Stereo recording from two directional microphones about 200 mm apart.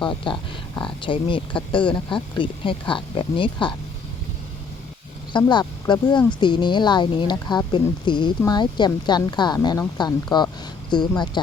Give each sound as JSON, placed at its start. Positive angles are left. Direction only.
{"t": 0.0, "sound": "speech", "side_deg": 25}
{"t": 5.3, "sound": "speech", "side_deg": 20}